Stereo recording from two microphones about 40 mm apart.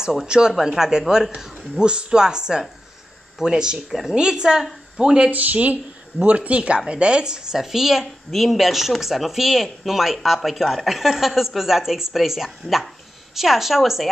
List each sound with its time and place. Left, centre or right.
0.0 s speech: centre
5.3 s speech: right; by 14.1 s centre